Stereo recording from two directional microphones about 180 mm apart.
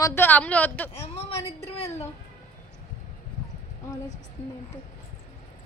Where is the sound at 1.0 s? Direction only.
35° left (ahead or behind).